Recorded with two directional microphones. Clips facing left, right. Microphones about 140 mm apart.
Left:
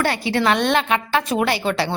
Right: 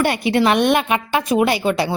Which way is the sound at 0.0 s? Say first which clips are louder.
Right 3 dB; 15° right (ahead or behind).